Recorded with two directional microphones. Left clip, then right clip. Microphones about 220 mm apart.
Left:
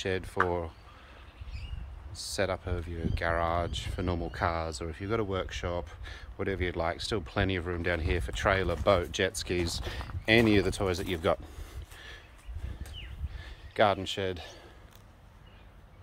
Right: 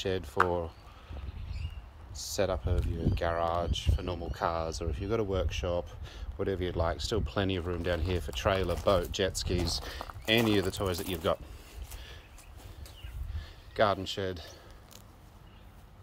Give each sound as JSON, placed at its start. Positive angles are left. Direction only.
{"t": 0.0, "sound": "speech", "side_deg": 10}
{"t": 2.1, "sound": "speech", "side_deg": 10}
{"t": 13.4, "sound": "a man's voice", "side_deg": 15}